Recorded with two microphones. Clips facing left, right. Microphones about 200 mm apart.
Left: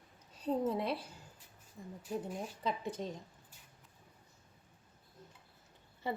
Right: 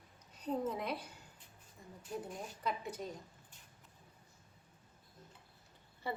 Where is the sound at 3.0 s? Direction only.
30° left (ahead or behind).